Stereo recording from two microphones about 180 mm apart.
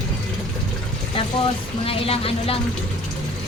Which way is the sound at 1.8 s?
30° left (ahead or behind).